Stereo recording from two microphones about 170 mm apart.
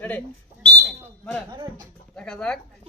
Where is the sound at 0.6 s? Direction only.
5° left (ahead or behind).